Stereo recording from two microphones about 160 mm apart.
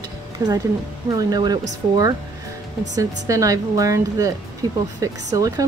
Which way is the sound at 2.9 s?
20° right (ahead or behind).